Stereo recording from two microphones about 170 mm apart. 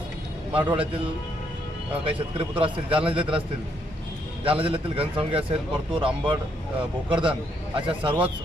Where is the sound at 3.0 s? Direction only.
5° right (ahead or behind).